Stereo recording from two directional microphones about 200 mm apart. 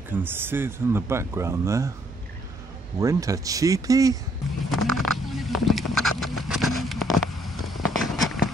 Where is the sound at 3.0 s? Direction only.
15° right (ahead or behind).